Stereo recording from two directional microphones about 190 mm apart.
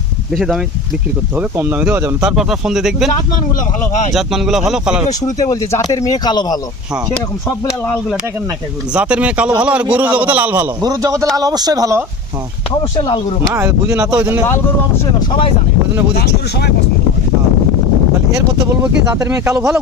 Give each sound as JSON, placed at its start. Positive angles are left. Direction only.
{"t": 0.3, "sound": "speech", "side_deg": 0}
{"t": 4.1, "sound": "speech", "side_deg": 0}
{"t": 5.4, "sound": "speech", "side_deg": 20}
{"t": 8.9, "sound": "speech", "side_deg": -5}
{"t": 10.8, "sound": "a man's voice", "side_deg": -20}
{"t": 13.0, "sound": "speech", "side_deg": 25}
{"t": 13.5, "sound": "speech", "side_deg": -15}
{"t": 15.3, "sound": "speech", "side_deg": 30}
{"t": 16.1, "sound": "speech", "side_deg": 55}
{"t": 19.2, "sound": "speech", "side_deg": -15}